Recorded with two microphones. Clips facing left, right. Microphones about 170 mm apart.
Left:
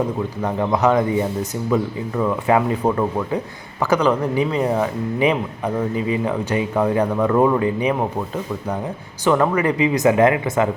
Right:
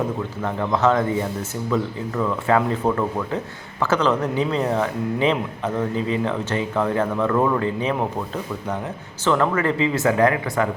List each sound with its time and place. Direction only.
0.4 s speech: 15° left (ahead or behind)
9.2 s speech: 15° left (ahead or behind)